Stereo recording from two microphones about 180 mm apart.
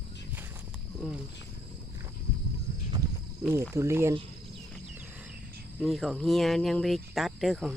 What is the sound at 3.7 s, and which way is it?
Speech, 15° right (ahead or behind).